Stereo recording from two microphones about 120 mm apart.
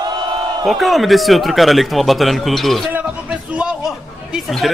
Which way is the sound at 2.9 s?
10° right (ahead or behind).